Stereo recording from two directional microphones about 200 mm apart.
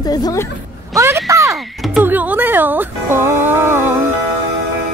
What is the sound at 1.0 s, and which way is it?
Speech, 15° right (ahead or behind).